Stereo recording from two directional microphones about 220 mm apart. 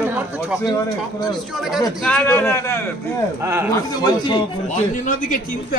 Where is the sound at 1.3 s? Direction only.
Centre (ahead or behind); by 4.4 s 20° left (ahead or behind).